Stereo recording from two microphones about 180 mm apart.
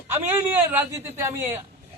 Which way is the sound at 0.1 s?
10° right (ahead or behind).